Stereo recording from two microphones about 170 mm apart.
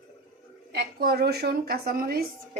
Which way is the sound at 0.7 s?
65° right (ahead or behind).